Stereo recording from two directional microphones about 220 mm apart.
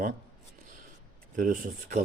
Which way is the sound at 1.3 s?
35° right (ahead or behind).